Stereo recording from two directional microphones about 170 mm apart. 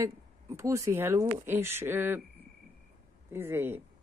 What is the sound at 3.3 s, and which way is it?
Speech, 15° right (ahead or behind).